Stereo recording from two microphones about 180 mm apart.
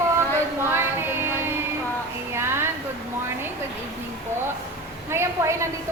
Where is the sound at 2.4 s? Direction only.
15° right (ahead or behind).